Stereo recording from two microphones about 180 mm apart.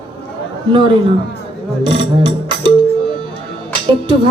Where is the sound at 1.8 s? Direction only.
25° right (ahead or behind).